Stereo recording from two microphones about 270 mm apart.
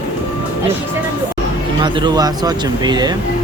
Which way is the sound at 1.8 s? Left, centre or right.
Centre.